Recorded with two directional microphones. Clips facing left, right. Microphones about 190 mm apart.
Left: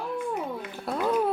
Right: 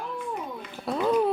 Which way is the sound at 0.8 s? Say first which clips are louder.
Right 2 dB; centre (ahead or behind).